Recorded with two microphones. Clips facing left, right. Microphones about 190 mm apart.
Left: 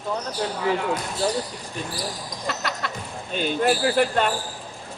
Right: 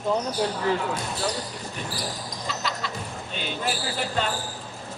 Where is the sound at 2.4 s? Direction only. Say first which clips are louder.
Left 3 dB; 60° left (ahead or behind).